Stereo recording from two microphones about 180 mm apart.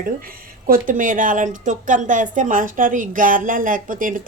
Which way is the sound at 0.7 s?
50° right (ahead or behind).